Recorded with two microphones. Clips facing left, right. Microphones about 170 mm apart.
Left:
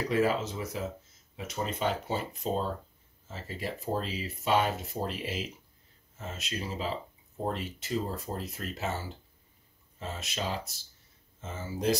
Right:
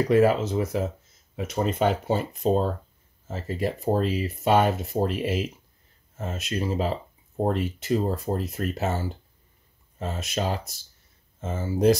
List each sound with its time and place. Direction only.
0.1 s speech: 55° right (ahead or behind)